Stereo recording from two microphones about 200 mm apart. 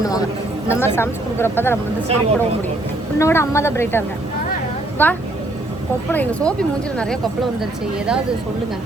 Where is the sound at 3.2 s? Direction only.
15° left (ahead or behind).